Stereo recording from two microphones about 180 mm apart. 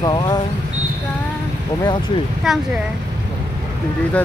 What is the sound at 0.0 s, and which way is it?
Speech, 25° left (ahead or behind).